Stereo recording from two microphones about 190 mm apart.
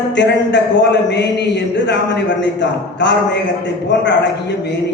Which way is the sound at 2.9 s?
65° left (ahead or behind).